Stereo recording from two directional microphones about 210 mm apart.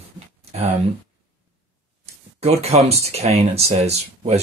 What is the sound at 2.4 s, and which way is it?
Speech, 30° right (ahead or behind).